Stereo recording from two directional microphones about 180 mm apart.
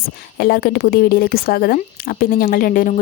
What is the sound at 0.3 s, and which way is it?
A woman's voice, 65° left (ahead or behind).